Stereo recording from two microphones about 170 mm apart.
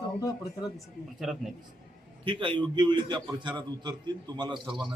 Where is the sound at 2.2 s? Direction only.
30° right (ahead or behind).